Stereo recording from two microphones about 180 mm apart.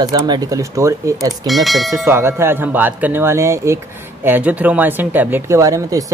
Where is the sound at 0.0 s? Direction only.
20° right (ahead or behind).